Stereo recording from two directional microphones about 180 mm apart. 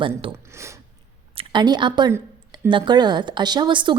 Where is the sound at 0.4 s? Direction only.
15° right (ahead or behind).